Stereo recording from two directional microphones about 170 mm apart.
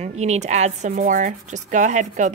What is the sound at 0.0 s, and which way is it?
Speech, 40° right (ahead or behind).